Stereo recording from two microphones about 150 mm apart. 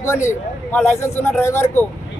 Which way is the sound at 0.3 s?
15° left (ahead or behind).